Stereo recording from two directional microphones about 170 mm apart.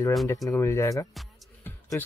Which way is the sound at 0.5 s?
15° left (ahead or behind).